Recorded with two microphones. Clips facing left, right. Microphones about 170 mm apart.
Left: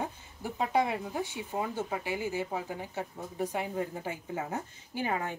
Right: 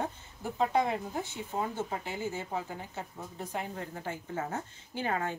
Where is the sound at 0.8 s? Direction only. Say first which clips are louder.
Even; 10° left (ahead or behind).